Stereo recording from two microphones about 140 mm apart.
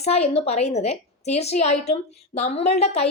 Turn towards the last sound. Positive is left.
turn(degrees=50)  # may be behind; listen again after turning